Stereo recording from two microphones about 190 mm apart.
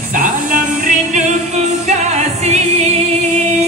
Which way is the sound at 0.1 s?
45° right (ahead or behind).